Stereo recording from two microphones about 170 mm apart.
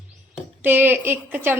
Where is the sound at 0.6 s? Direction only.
10° right (ahead or behind).